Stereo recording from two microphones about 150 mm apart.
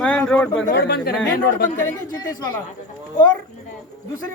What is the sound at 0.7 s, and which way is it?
Speech, 90° left.